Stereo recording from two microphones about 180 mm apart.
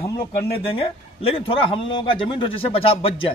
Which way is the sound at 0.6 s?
30° left (ahead or behind).